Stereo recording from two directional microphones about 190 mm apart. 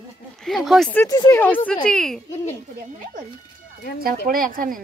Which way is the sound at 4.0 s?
50° right (ahead or behind).